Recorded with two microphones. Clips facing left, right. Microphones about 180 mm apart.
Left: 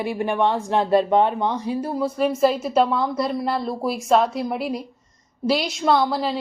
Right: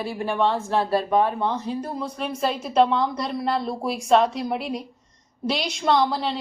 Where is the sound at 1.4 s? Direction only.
10° left (ahead or behind).